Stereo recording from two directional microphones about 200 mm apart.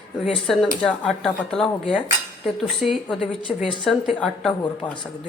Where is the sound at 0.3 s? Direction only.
Centre (ahead or behind).